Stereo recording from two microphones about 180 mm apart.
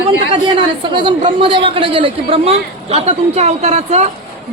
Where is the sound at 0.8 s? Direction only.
25° right (ahead or behind).